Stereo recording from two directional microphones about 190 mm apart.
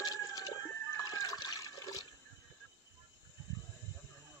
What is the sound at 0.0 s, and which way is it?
Chicken, 20° left (ahead or behind).